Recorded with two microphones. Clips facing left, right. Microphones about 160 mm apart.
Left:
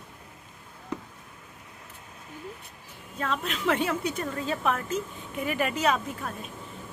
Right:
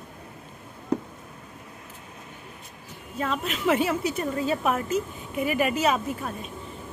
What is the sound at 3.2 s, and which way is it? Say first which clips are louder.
A woman's voice: right 2 dB; 5° right (ahead or behind).